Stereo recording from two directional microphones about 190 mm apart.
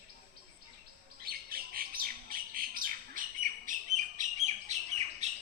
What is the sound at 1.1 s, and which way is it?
Bird, 50° right (ahead or behind).